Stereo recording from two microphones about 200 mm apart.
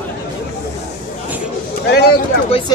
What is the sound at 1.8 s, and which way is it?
Speech, 55° left (ahead or behind).